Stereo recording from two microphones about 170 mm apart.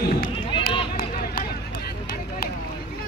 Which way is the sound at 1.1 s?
65° left (ahead or behind).